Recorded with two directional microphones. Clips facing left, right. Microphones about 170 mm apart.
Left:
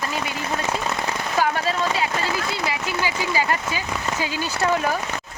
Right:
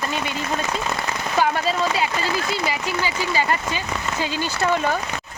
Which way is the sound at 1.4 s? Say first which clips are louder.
Right 2 dB; centre (ahead or behind).